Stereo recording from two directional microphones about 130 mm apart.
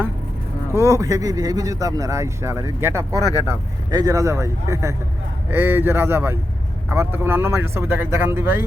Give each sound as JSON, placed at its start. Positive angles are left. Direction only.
{"t": 0.7, "sound": "speech", "side_deg": -20}